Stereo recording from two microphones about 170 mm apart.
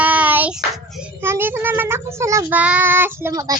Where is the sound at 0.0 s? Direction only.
10° right (ahead or behind).